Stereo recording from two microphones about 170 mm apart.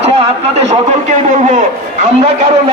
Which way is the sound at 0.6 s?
45° right (ahead or behind).